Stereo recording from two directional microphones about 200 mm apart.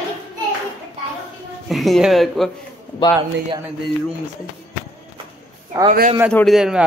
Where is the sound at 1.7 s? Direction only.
Centre (ahead or behind).